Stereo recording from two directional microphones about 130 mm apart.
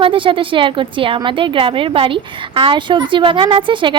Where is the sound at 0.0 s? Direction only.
40° right (ahead or behind).